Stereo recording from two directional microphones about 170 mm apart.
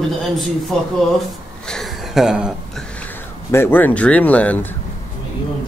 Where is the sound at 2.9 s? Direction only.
10° left (ahead or behind).